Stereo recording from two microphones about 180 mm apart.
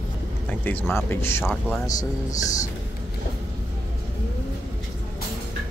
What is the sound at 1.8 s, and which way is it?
Speech, 20° left (ahead or behind).